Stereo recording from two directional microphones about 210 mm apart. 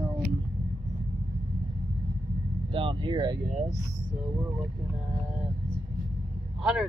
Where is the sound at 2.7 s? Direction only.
25° right (ahead or behind).